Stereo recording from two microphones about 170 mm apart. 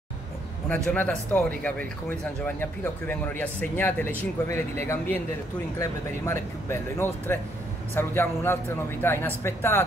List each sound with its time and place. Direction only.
0.7 s speech: 10° left (ahead or behind)
2.4 s speech: 10° left (ahead or behind)